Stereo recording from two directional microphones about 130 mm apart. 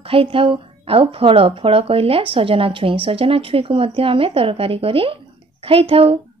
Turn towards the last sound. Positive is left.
turn(degrees=-45)  # may be behind; listen again after turning